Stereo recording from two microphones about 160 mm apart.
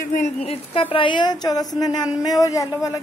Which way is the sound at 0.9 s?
30° left (ahead or behind).